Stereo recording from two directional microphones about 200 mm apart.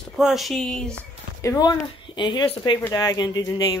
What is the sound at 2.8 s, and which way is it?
Speech, 15° left (ahead or behind).